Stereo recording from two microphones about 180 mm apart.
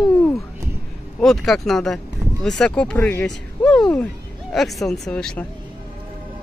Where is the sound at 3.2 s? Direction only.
5° left (ahead or behind).